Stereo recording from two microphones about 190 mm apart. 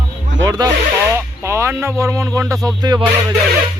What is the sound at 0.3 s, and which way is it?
Music, 80° right.